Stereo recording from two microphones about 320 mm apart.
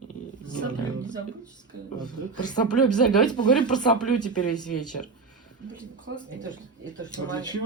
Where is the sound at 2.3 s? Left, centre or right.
Centre.